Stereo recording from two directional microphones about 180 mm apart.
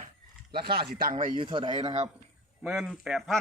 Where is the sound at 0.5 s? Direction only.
60° right (ahead or behind).